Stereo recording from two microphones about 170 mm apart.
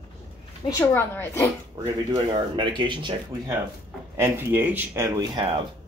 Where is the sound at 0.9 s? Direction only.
15° left (ahead or behind).